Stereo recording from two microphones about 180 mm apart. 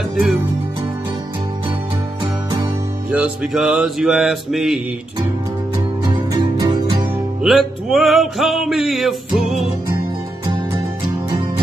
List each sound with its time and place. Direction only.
3.1 s music: 5° right (ahead or behind)
6.0 s music: 20° right (ahead or behind)
7.4 s music: centre (ahead or behind)